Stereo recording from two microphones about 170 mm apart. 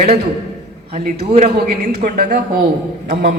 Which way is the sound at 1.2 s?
35° right (ahead or behind).